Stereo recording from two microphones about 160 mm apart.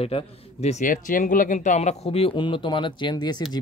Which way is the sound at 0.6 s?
50° left (ahead or behind).